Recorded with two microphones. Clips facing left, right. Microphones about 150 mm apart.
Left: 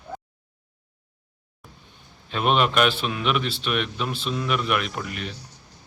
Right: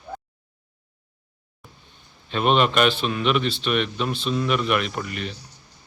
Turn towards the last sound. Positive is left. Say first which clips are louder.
# right 2 dB
turn(degrees=5)  # may be behind; listen again after turning